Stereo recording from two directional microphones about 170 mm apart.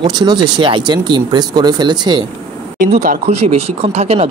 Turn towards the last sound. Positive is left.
turn(degrees=-40)  # may be behind; listen again after turning